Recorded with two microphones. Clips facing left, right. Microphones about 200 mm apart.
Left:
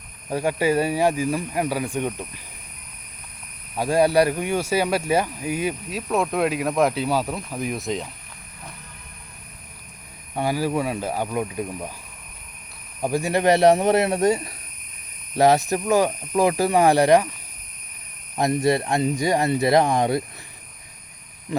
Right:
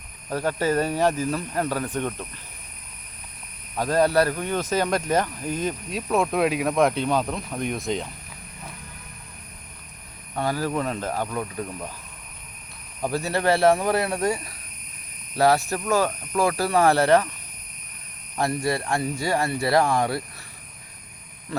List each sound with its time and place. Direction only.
0.3 s speech: 15° left (ahead or behind)
3.8 s speech: 10° left (ahead or behind)
10.3 s speech: 10° left (ahead or behind)
13.0 s speech: 15° left (ahead or behind)
18.3 s speech: 20° left (ahead or behind)